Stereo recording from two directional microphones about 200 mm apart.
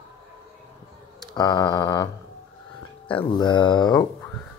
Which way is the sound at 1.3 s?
20° left (ahead or behind).